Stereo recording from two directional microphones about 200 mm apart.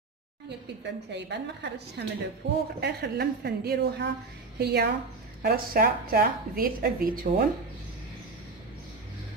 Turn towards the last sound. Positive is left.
turn(degrees=-45)  # may be behind; listen again after turning